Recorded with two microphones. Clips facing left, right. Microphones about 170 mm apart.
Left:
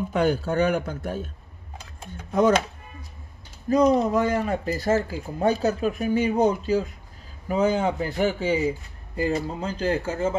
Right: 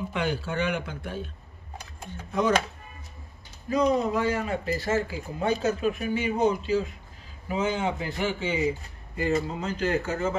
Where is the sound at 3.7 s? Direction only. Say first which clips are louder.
Left 4 dB; 40° left (ahead or behind).